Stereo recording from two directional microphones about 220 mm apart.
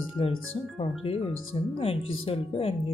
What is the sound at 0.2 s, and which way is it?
Speech, 25° left (ahead or behind).